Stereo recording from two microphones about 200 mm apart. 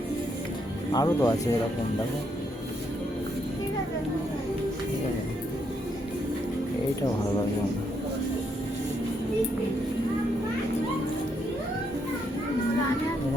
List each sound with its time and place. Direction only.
0.9 s speech: 20° left (ahead or behind)